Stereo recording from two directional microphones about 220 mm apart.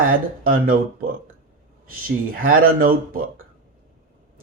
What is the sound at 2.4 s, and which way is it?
A man's voice, 40° right (ahead or behind).